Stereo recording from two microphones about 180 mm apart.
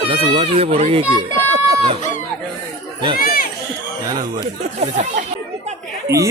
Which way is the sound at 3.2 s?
55° left (ahead or behind).